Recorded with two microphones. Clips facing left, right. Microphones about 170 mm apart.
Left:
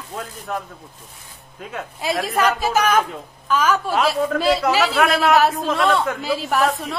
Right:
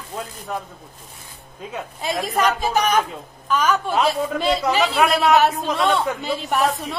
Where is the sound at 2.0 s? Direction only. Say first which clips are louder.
Left 1 dB; centre (ahead or behind).